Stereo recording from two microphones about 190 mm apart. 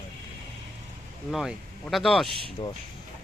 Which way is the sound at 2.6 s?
25° left (ahead or behind).